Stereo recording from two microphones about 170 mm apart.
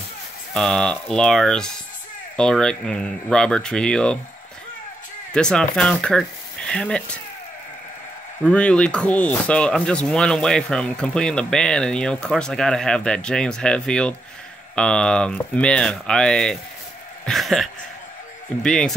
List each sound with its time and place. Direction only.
0.5 s speech: 5° left (ahead or behind)
5.3 s speech: 5° left (ahead or behind)
8.5 s speech: 5° left (ahead or behind)
17.2 s a sound: centre (ahead or behind)
18.6 s speech: 5° left (ahead or behind)